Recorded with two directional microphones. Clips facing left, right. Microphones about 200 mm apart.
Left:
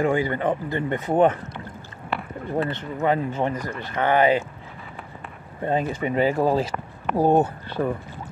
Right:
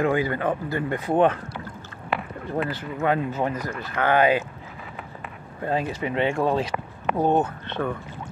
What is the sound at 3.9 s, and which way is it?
Speech, 20° left (ahead or behind).